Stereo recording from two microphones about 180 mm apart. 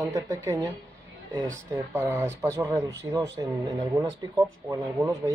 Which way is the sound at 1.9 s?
15° right (ahead or behind).